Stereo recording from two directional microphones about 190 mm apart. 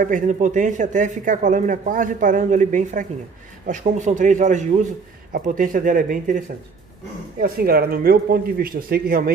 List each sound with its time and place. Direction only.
0.0 s speech: 40° right (ahead or behind)